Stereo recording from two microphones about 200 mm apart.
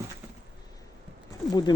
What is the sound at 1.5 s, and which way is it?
Speech, 20° left (ahead or behind).